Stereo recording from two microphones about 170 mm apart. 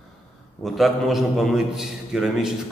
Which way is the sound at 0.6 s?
Centre (ahead or behind).